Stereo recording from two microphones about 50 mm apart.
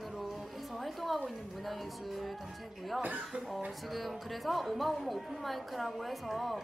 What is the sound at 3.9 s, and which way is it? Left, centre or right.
Speech, centre.